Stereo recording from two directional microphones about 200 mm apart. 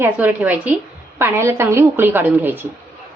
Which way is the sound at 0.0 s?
10° right (ahead or behind).